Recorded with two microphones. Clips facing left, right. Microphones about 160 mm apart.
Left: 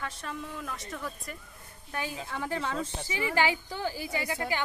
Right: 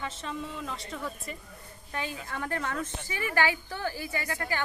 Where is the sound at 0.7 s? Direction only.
20° right (ahead or behind).